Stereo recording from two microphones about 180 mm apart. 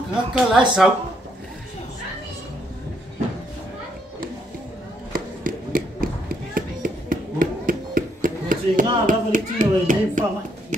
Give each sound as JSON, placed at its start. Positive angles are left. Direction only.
{"t": 0.1, "sound": "speech", "side_deg": -5}
{"t": 5.1, "sound": "a sound", "side_deg": -50}
{"t": 9.0, "sound": "a child's voice", "side_deg": -45}